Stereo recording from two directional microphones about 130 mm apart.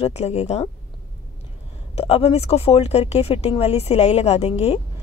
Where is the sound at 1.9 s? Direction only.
50° left (ahead or behind).